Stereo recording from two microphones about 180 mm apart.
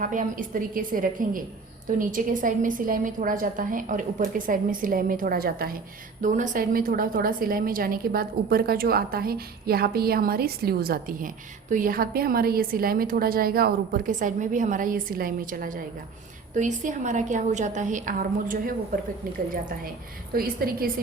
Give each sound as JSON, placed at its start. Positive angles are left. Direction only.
{"t": 0.0, "sound": "a woman's voice", "side_deg": -45}
{"t": 6.2, "sound": "a woman's voice", "side_deg": -45}
{"t": 20.3, "sound": "a woman's voice", "side_deg": -55}